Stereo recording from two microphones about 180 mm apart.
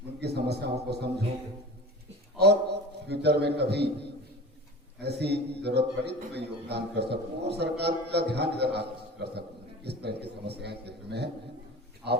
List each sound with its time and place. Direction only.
0.2 s a man's voice: 65° right (ahead or behind)
2.4 s a sound: 65° right (ahead or behind)
5.0 s a man's voice: 65° right (ahead or behind)